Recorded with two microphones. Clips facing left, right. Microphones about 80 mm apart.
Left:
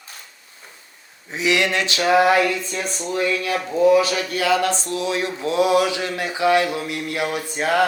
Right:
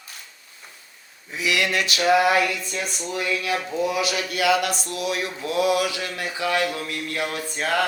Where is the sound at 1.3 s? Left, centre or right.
Left.